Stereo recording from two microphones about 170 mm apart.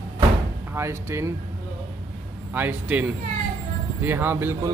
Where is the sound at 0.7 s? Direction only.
15° right (ahead or behind).